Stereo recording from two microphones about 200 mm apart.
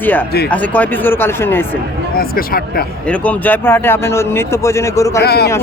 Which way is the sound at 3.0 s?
5° left (ahead or behind).